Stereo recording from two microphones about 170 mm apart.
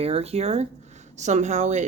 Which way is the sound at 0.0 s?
35° right (ahead or behind).